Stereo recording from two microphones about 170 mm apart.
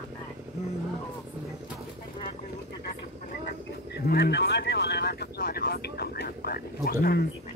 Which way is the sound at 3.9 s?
75° left (ahead or behind).